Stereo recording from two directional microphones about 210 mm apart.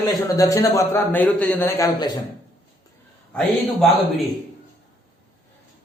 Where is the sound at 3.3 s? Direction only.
5° left (ahead or behind).